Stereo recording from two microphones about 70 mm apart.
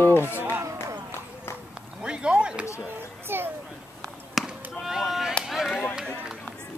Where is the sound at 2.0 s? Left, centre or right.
Centre.